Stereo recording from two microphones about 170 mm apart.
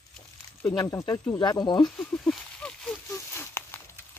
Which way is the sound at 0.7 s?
20° left (ahead or behind).